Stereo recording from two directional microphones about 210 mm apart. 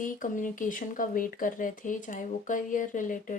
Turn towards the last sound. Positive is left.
turn(degrees=40)  # may be behind; listen again after turning